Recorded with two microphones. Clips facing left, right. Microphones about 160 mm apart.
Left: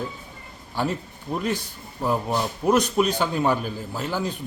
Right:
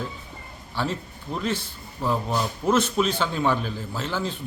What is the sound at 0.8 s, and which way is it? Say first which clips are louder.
A man's voice: left 2 dB; 10° left (ahead or behind).